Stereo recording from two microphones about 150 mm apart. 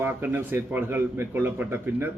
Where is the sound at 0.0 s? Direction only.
15° right (ahead or behind).